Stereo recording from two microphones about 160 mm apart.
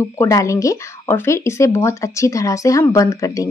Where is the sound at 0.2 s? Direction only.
20° left (ahead or behind).